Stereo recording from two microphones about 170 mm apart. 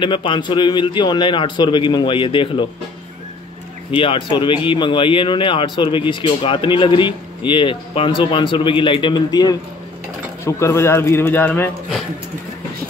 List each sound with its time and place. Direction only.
0.0 s speech: 30° left (ahead or behind)
3.9 s a man's voice: 30° left (ahead or behind); by 11.7 s 10° left (ahead or behind)